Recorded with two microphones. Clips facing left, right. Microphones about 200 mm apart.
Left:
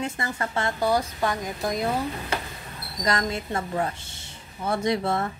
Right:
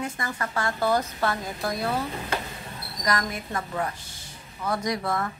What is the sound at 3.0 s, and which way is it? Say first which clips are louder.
A woman's voice: left 2 dB; 25° left (ahead or behind).